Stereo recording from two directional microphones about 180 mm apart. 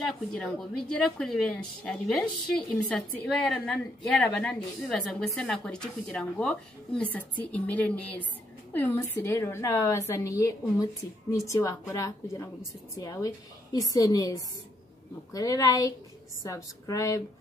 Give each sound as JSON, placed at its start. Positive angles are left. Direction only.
{"t": 0.3, "sound": "a woman's voice", "side_deg": 5}